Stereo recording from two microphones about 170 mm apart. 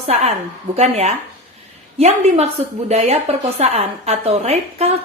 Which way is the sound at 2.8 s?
40° right (ahead or behind).